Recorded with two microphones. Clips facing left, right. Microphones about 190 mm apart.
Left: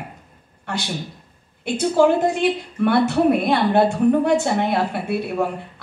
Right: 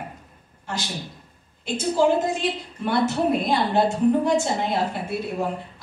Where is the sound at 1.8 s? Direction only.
65° left (ahead or behind).